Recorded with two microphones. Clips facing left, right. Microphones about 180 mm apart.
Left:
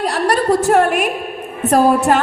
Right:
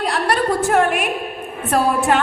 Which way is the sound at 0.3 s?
40° left (ahead or behind).